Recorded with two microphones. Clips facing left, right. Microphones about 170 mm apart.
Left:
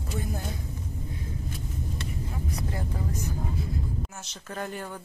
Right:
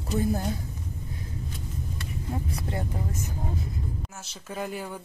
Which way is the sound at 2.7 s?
25° right (ahead or behind).